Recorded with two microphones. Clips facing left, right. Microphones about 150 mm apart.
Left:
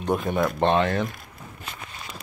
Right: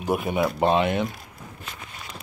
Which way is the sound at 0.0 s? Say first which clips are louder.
Even; 10° right (ahead or behind).